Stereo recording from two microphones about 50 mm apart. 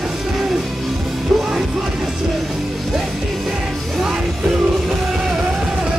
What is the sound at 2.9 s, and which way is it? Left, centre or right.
Music, centre.